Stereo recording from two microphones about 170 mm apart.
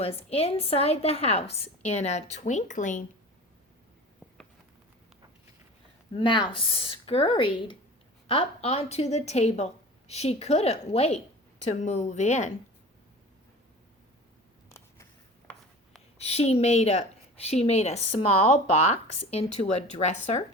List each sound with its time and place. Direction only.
0.0 s a woman's voice: 35° left (ahead or behind)
6.1 s a woman's voice: 30° left (ahead or behind)
16.1 s a woman's voice: 40° left (ahead or behind)